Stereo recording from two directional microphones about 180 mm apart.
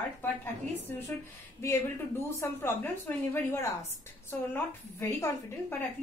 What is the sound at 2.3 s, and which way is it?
A woman's voice, 15° left (ahead or behind).